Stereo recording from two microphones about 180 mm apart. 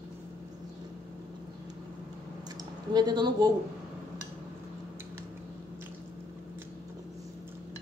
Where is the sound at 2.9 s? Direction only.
25° right (ahead or behind).